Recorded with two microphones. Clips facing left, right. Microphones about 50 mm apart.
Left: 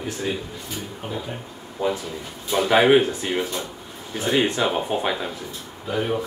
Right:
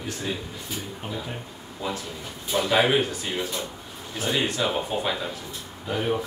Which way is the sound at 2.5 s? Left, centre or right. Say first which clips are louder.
Left 5 dB; centre.